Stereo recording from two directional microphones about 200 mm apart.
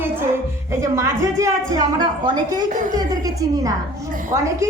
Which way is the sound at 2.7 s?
40° right (ahead or behind).